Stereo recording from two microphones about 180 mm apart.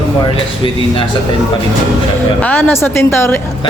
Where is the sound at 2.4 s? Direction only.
10° left (ahead or behind).